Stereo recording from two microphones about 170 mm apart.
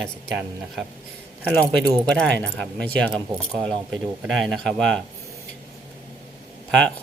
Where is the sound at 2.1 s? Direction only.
5° left (ahead or behind).